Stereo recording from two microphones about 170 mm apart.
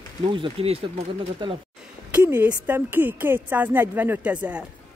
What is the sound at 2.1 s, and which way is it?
Speech, 10° right (ahead or behind).